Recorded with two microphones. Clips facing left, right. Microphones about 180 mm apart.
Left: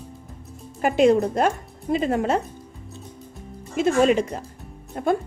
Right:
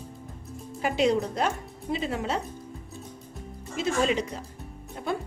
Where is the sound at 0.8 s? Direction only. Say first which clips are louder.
Left 7 dB; 50° left (ahead or behind).